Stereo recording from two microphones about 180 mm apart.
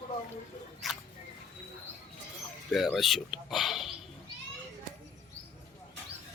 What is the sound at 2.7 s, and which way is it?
Speech, centre (ahead or behind).